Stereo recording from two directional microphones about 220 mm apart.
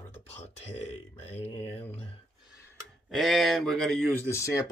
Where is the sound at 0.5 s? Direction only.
30° left (ahead or behind).